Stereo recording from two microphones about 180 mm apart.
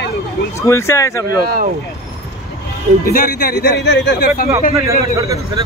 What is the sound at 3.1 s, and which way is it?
Speech, 55° left (ahead or behind).